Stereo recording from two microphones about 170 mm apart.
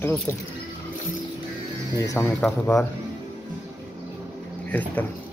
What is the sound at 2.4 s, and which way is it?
Speech, 10° left (ahead or behind).